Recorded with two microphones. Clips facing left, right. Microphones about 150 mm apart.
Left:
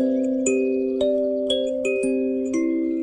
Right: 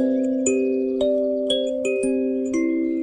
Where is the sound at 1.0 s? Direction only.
15° right (ahead or behind).